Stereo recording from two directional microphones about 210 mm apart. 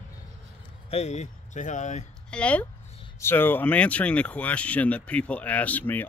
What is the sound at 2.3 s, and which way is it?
Speech, 5° left (ahead or behind).